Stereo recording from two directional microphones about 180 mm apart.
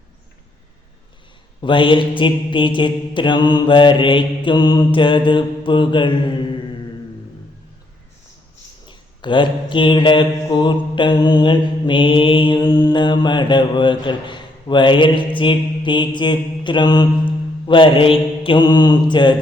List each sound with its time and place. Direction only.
1.6 s mantra: 25° left (ahead or behind)
8.9 s mantra: 25° left (ahead or behind)